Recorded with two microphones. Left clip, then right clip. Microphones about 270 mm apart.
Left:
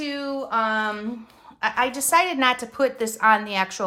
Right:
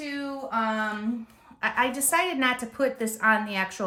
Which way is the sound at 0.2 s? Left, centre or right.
Centre.